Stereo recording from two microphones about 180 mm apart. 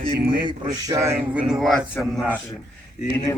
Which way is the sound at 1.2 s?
5° right (ahead or behind).